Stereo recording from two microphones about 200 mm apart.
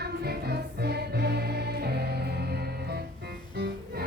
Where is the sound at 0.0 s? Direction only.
55° right (ahead or behind).